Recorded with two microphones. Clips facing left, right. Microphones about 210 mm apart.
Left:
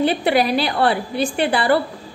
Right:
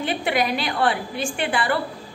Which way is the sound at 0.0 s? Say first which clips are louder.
Left 6 dB; 35° left (ahead or behind).